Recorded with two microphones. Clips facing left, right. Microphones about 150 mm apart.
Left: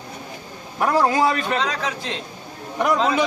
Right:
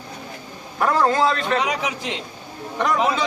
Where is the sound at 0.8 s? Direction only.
10° left (ahead or behind).